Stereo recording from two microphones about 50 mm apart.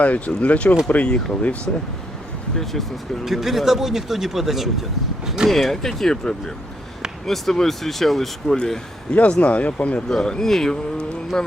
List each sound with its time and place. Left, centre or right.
0.0 s speech: left
3.2 s speech: centre
5.5 s speech: centre
9.1 s speech: left
10.2 s speech: centre